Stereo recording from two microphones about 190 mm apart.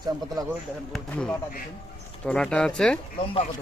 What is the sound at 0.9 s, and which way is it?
Speech, 5° left (ahead or behind).